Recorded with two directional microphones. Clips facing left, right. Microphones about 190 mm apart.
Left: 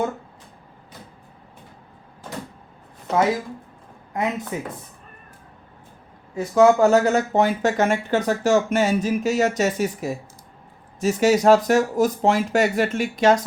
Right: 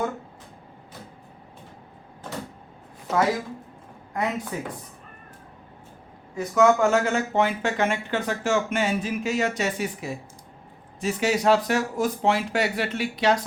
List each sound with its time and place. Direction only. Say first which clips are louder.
4.1 s speech: left 2 dB; 20° left (ahead or behind)
6.3 s speech: left 4 dB; 30° left (ahead or behind)